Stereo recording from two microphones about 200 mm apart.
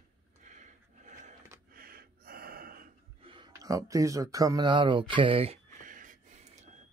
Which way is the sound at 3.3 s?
20° right (ahead or behind).